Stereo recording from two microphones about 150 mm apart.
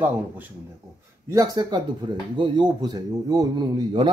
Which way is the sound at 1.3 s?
25° right (ahead or behind).